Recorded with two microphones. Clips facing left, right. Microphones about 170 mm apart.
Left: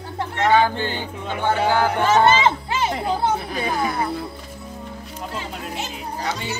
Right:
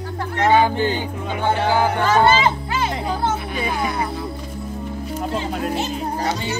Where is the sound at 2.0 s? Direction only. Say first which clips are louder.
Left 1 dB; 20° left (ahead or behind).